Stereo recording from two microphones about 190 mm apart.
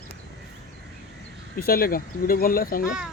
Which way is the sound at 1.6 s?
50° left (ahead or behind).